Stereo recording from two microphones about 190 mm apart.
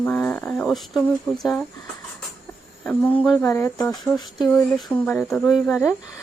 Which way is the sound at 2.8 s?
5° left (ahead or behind).